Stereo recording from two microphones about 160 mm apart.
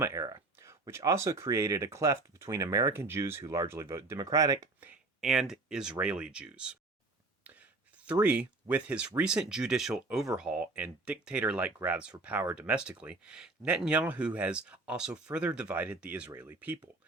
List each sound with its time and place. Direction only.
0.0 s speech: 20° right (ahead or behind)
4.8 s speech: 5° right (ahead or behind)
7.4 s whispering: 10° right (ahead or behind)
8.2 s speech: 10° right (ahead or behind)